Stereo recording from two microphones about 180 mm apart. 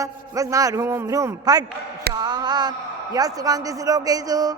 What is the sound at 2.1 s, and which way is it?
A man's voice, 25° right (ahead or behind).